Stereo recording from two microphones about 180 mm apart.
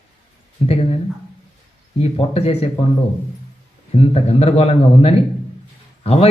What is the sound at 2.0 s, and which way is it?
Speech, 35° left (ahead or behind).